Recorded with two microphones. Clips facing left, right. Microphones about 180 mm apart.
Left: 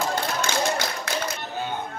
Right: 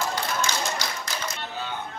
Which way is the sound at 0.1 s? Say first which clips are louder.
Left 2 dB; 60° left (ahead or behind).